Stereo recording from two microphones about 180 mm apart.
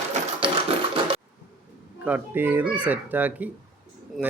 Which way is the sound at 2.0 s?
10° right (ahead or behind).